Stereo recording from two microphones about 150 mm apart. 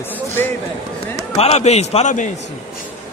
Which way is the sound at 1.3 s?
45° left (ahead or behind).